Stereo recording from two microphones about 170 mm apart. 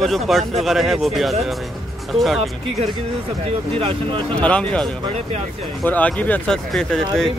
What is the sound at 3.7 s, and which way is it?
Speech, 35° right (ahead or behind).